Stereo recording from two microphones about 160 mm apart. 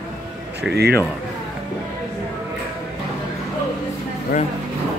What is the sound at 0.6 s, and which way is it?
Speech, 80° right.